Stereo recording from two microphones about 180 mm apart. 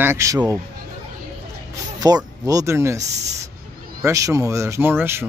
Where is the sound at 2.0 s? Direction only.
20° right (ahead or behind).